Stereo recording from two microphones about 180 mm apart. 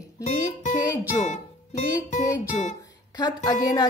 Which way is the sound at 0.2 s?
40° left (ahead or behind).